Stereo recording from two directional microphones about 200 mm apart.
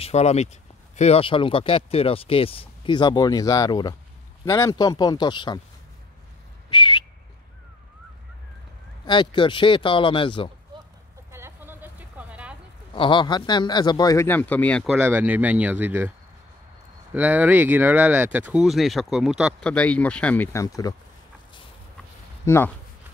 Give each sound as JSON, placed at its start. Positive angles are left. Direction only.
{"t": 0.0, "sound": "speech", "side_deg": 35}
{"t": 6.7, "sound": "a sound", "side_deg": 25}
{"t": 9.0, "sound": "speech", "side_deg": 25}
{"t": 11.3, "sound": "vehicle", "side_deg": -10}
{"t": 12.9, "sound": "speech", "side_deg": 25}
{"t": 14.9, "sound": "speech", "side_deg": -10}
{"t": 17.1, "sound": "speech", "side_deg": -10}
{"t": 22.4, "sound": "speech", "side_deg": 15}